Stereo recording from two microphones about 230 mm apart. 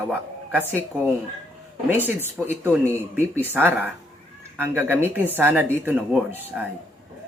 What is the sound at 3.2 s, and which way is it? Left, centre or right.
Speech, centre.